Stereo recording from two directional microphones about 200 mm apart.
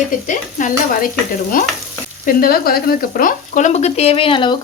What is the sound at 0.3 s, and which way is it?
Speech, 40° left (ahead or behind).